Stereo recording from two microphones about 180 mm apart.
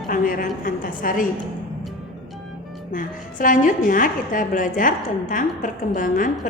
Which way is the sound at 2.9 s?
50° left (ahead or behind).